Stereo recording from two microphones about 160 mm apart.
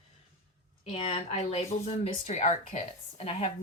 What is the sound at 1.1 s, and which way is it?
Speech, 40° left (ahead or behind).